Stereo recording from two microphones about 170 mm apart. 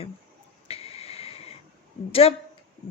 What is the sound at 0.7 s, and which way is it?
Snort, 35° left (ahead or behind).